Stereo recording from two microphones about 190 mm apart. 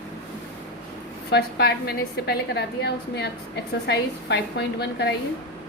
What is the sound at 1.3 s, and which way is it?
A woman's voice, 60° left (ahead or behind).